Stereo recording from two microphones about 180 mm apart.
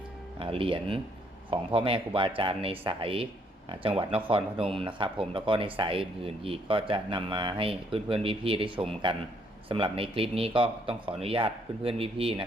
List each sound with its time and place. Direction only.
0.3 s speech: 30° right (ahead or behind)